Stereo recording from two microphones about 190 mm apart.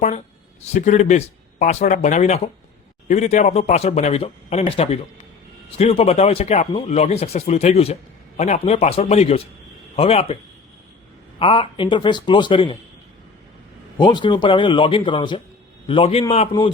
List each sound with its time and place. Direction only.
0.6 s speech: 40° left (ahead or behind)
11.3 s a man's voice: 30° left (ahead or behind)
14.0 s a man's voice: 25° left (ahead or behind)